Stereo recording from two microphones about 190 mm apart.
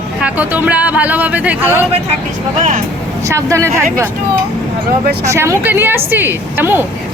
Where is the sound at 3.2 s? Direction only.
15° right (ahead or behind).